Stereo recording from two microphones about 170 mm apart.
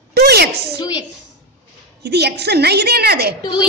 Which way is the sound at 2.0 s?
75° right (ahead or behind).